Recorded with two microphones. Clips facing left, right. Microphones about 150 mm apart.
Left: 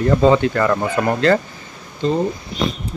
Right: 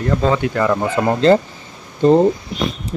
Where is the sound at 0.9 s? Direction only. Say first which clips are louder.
Right 6 dB; 25° right (ahead or behind).